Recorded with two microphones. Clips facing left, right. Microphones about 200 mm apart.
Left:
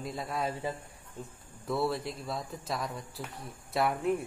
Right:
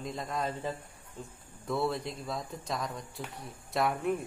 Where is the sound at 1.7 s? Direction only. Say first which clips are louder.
Left 1 dB; centre (ahead or behind).